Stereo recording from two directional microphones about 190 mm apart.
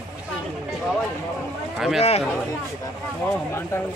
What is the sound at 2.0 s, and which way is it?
Speech, 35° left (ahead or behind).